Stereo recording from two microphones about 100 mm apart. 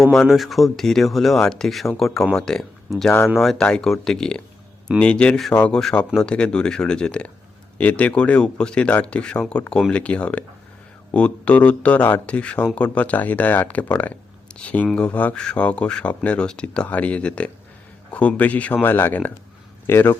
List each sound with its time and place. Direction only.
0.0 s speech: centre (ahead or behind); by 20.1 s 20° left (ahead or behind)